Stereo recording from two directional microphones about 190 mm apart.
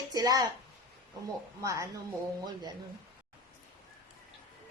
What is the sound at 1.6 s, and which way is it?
Speech, 15° right (ahead or behind).